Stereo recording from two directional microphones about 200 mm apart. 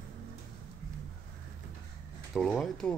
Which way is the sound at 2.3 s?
Centre (ahead or behind).